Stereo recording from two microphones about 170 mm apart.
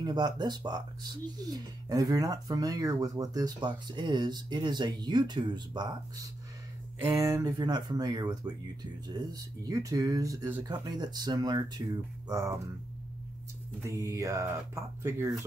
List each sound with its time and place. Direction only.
0.0 s speech: 25° right (ahead or behind)
7.0 s speech: 15° right (ahead or behind)
12.3 s music: 15° right (ahead or behind)
13.8 s music: 15° right (ahead or behind)